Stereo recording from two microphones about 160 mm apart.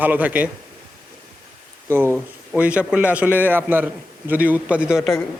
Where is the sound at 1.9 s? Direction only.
15° right (ahead or behind).